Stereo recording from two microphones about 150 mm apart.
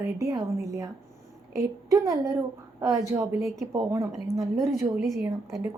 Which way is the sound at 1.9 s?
20° right (ahead or behind).